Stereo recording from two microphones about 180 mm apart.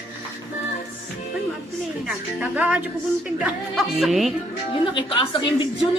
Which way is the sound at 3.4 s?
Centre (ahead or behind).